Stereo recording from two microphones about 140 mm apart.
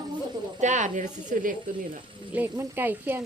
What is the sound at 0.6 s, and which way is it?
Speech, 60° right (ahead or behind).